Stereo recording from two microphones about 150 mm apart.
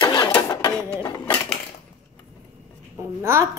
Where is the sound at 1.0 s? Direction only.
30° left (ahead or behind).